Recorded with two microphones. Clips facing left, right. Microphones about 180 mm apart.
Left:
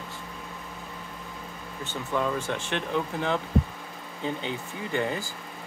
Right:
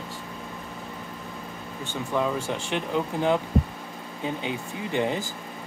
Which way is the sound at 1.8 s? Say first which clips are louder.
Right 2 dB; 15° right (ahead or behind).